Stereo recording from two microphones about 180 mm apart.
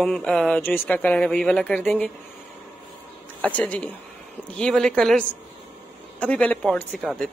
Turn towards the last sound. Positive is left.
turn(degrees=5)  # may be behind; listen again after turning